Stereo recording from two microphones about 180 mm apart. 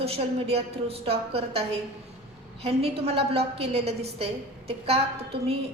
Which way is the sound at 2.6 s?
35° right (ahead or behind).